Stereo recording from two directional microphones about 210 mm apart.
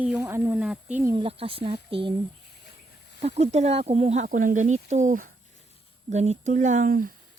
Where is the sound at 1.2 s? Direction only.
25° right (ahead or behind).